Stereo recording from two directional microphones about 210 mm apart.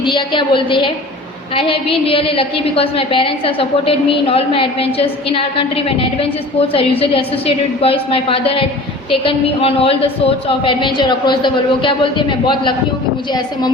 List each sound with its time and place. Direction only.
0.0 s a woman's voice: 25° left (ahead or behind)